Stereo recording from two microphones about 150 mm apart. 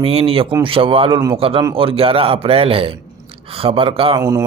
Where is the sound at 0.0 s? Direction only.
40° right (ahead or behind).